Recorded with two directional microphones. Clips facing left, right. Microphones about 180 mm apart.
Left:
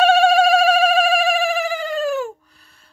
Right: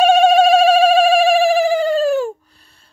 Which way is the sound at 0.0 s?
20° right (ahead or behind).